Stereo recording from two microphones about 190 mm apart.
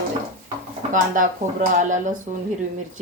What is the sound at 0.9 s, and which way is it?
A woman's voice, 45° right (ahead or behind).